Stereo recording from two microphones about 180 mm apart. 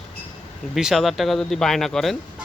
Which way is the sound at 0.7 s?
Centre (ahead or behind).